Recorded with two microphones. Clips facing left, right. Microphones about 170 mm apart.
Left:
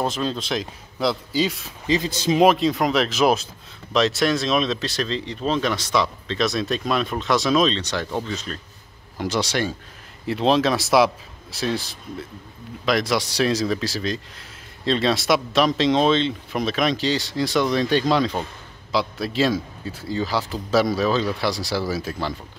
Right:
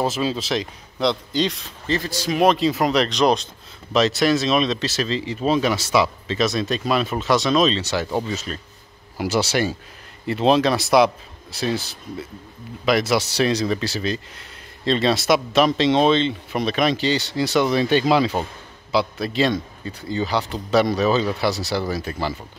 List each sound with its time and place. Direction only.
0.0 s speech: 5° right (ahead or behind)
1.9 s speech: 20° left (ahead or behind)
2.4 s speech: centre (ahead or behind)